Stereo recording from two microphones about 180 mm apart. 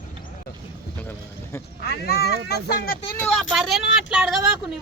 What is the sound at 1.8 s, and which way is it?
Speech, 60° left (ahead or behind).